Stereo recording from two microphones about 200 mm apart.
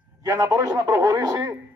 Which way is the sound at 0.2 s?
15° right (ahead or behind).